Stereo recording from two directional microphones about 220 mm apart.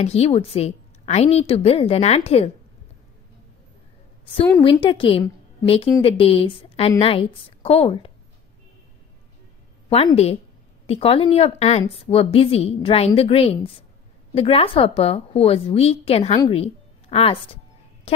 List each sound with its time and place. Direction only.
0.0 s a woman's voice: 30° left (ahead or behind)
4.3 s a woman's voice: 25° left (ahead or behind)
9.8 s a woman's voice: 25° left (ahead or behind)